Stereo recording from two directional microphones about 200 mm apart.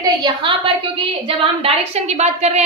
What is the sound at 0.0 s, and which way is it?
A woman's voice, 25° right (ahead or behind).